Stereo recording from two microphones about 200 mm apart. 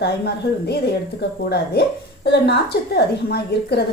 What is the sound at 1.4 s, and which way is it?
A woman's voice, 55° left (ahead or behind).